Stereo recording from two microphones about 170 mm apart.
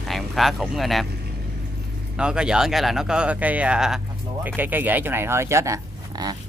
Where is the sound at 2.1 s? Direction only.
5° right (ahead or behind).